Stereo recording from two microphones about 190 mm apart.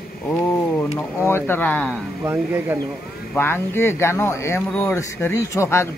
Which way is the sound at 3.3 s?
10° left (ahead or behind).